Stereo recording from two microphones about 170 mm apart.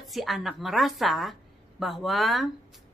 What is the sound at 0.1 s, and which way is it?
A woman's voice, centre (ahead or behind).